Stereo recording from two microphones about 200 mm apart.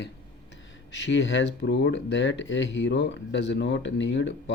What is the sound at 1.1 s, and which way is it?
Speech, 65° left (ahead or behind).